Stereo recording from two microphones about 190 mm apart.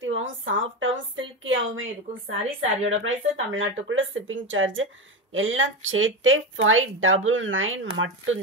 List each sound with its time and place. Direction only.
0.0 s a woman's voice: 85° right